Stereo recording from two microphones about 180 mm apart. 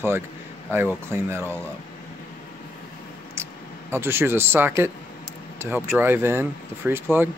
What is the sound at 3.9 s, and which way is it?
Speech, 15° right (ahead or behind).